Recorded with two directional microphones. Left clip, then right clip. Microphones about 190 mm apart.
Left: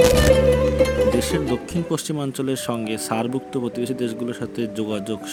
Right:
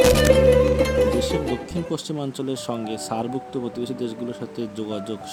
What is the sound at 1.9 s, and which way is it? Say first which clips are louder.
Speech: left 3 dB; 15° left (ahead or behind).